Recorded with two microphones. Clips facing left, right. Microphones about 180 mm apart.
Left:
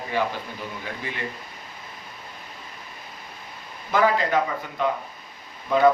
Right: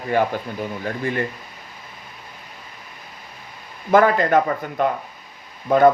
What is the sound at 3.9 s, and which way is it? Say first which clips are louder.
Speech: right 6 dB; 50° right (ahead or behind).